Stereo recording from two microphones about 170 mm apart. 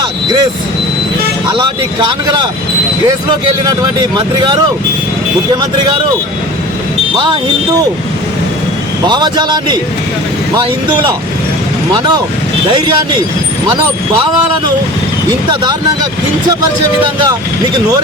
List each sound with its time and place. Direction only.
0.0 s vehicle: 25° right (ahead or behind)
2.0 s speech: 25° right (ahead or behind)
9.0 s speech: 25° right (ahead or behind)
17.0 s speech: 30° right (ahead or behind)